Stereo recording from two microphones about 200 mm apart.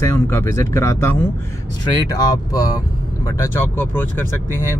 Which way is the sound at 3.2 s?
10° left (ahead or behind).